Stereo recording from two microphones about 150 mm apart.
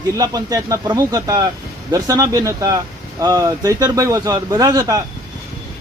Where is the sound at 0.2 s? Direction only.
25° right (ahead or behind).